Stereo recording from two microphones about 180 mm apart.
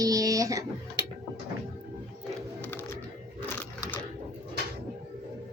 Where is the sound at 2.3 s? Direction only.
10° left (ahead or behind).